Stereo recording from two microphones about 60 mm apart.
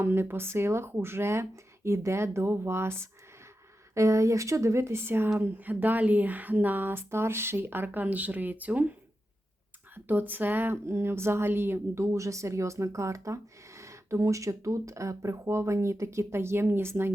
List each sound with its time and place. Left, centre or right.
0.0 s speech: right
3.9 s speech: right
9.9 s speech: right
10.8 s speech: right